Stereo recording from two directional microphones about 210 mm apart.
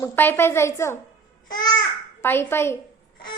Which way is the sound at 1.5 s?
20° left (ahead or behind).